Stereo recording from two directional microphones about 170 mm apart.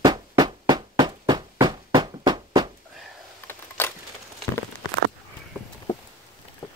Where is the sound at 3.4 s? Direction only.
15° left (ahead or behind).